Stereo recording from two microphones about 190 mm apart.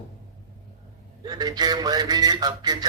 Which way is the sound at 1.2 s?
20° right (ahead or behind).